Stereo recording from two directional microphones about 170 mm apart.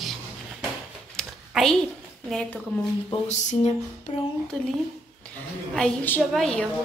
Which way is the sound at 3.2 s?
40° left (ahead or behind).